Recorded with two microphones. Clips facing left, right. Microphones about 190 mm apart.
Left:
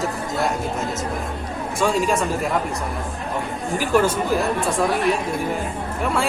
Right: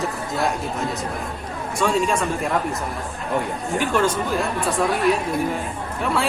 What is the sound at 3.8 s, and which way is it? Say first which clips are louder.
Speech: left 2 dB; 5° left (ahead or behind).